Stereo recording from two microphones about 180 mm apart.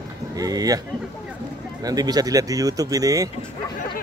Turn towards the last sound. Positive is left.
turn(degrees=-20)  # may be behind; listen again after turning